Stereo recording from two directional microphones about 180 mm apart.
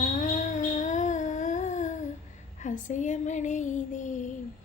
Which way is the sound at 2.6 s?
45° left (ahead or behind).